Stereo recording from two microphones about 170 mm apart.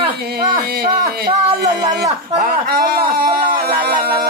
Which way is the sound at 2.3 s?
45° right (ahead or behind).